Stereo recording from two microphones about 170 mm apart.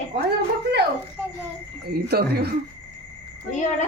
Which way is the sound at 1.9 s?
65° right (ahead or behind).